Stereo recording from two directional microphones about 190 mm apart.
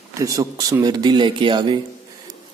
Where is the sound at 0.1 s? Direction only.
15° right (ahead or behind).